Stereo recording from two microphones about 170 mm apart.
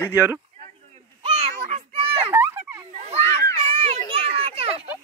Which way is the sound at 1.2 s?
35° right (ahead or behind).